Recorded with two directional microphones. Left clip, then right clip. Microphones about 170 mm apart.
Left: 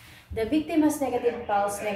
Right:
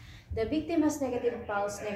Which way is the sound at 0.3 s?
20° left (ahead or behind).